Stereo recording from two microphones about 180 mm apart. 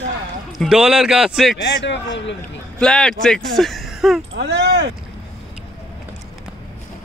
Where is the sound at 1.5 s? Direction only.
75° left (ahead or behind).